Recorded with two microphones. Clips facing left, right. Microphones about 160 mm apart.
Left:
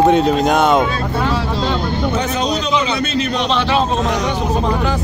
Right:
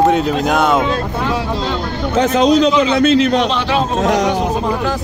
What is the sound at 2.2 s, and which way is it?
Speech, 90° right.